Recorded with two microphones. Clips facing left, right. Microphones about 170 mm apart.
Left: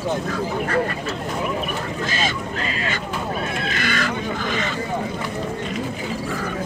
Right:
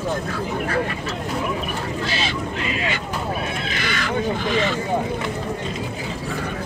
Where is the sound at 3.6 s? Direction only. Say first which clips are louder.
Left 2 dB; 50° left (ahead or behind).